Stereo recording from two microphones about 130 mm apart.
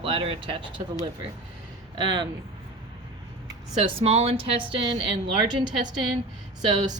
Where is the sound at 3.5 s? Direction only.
45° right (ahead or behind).